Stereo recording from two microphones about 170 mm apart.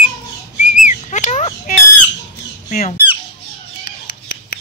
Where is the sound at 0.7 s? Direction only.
45° left (ahead or behind).